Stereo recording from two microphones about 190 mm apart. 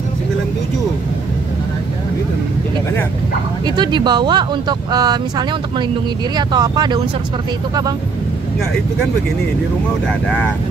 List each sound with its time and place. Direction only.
3.6 s speech: 25° right (ahead or behind)
6.3 s speech: 20° right (ahead or behind)
10.0 s speech: 5° left (ahead or behind)